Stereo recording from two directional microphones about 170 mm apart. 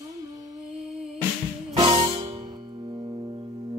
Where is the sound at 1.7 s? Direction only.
30° right (ahead or behind).